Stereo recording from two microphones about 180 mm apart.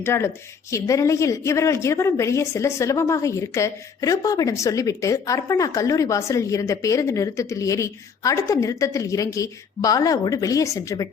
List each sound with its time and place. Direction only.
0.0 s a woman's voice: 15° left (ahead or behind)